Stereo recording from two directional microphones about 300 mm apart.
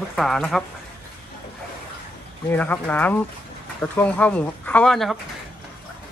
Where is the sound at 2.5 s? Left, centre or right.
Centre.